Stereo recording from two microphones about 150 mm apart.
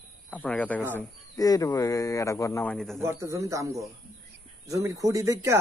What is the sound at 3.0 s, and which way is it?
Speech, 15° right (ahead or behind).